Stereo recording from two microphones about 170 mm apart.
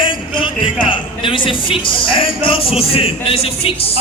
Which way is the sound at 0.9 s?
30° left (ahead or behind).